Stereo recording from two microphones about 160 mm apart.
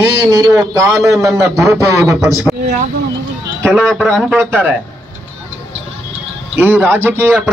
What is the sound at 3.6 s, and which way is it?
Speech, centre (ahead or behind).